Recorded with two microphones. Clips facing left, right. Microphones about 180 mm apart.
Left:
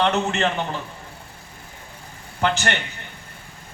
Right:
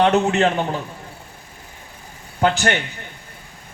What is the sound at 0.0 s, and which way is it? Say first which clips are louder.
Speech: right 5 dB; 40° right (ahead or behind).